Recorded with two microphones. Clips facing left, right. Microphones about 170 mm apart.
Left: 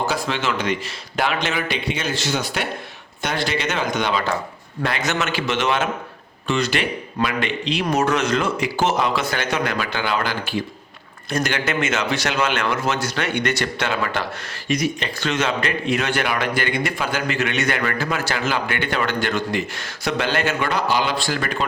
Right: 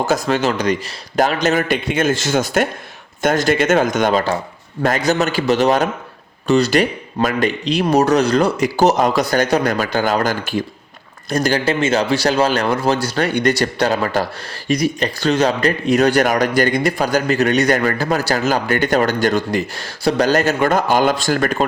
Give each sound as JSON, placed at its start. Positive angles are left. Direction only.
{"t": 0.1, "sound": "a man's voice", "side_deg": -45}